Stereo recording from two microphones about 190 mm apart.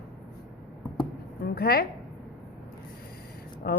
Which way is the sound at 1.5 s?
55° left (ahead or behind).